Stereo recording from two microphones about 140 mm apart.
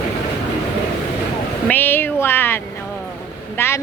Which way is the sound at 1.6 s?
15° left (ahead or behind).